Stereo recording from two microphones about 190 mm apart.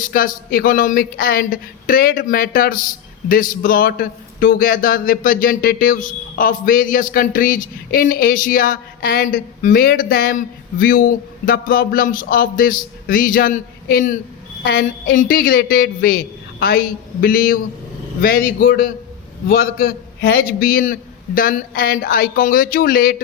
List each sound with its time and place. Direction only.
0.0 s speech: 45° left (ahead or behind)